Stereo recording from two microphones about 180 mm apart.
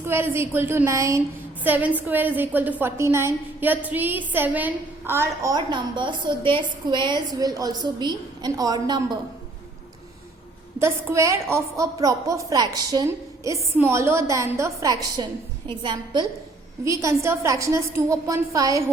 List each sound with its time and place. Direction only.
0.0 s a woman's voice: 15° right (ahead or behind)
10.8 s a woman's voice: 15° right (ahead or behind)